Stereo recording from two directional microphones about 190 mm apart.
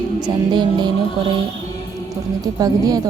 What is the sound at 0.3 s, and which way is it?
Speech, 25° right (ahead or behind).